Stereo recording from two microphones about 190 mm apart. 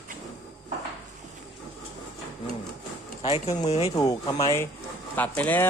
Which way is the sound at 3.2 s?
35° left (ahead or behind).